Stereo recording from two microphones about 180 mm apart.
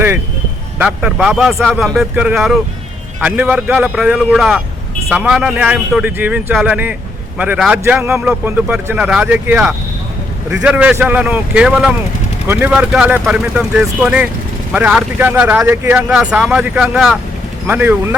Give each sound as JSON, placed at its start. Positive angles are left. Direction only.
{"t": 0.8, "sound": "a man's voice", "side_deg": -5}